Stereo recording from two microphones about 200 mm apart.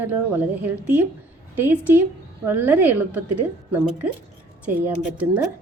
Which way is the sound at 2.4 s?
10° right (ahead or behind).